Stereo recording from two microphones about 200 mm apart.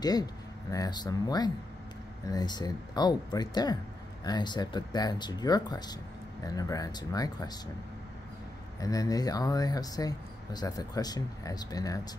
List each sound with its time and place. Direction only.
0.7 s speech: 20° left (ahead or behind)
8.8 s speech: 15° left (ahead or behind)